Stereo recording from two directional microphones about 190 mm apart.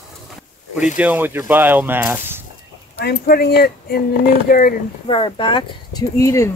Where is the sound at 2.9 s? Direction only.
55° left (ahead or behind).